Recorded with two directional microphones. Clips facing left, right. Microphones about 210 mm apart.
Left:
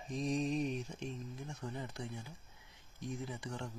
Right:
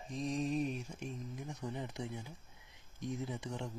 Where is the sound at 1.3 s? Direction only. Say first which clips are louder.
Right 2 dB; 15° right (ahead or behind).